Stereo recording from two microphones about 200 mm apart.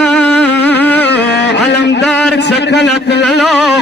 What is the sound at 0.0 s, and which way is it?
Music, 5° left (ahead or behind).